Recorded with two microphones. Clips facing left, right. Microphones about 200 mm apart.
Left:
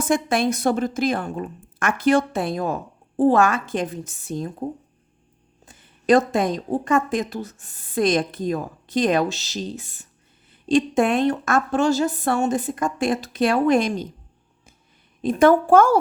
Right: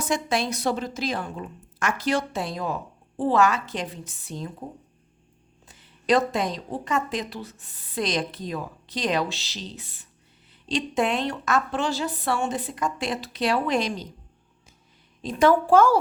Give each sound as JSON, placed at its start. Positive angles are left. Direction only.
{"t": 0.0, "sound": "a woman's voice", "side_deg": 55}
{"t": 5.6, "sound": "a woman's voice", "side_deg": 50}
{"t": 15.2, "sound": "a woman's voice", "side_deg": 55}